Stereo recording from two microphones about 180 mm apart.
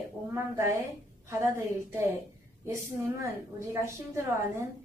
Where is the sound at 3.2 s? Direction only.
15° right (ahead or behind).